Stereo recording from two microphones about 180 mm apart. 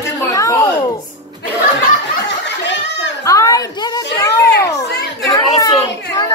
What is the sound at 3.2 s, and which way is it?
A woman's voice, 20° left (ahead or behind).